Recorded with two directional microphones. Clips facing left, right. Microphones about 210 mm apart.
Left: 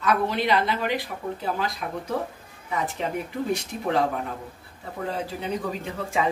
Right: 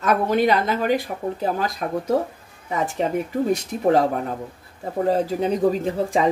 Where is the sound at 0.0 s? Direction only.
45° right (ahead or behind).